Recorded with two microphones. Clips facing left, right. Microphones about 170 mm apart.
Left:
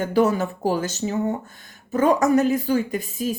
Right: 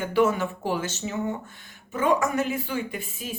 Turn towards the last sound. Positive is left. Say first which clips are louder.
# left 8 dB
turn(degrees=40)  # may be behind; listen again after turning